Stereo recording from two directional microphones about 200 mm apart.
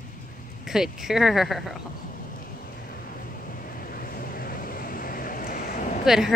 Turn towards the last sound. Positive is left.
turn(degrees=0)  # may be behind; listen again after turning